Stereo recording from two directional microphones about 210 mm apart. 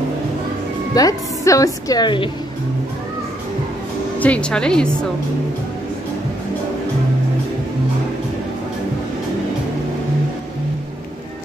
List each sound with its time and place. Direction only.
0.9 s speech: 15° left (ahead or behind)
4.2 s speech: 5° left (ahead or behind)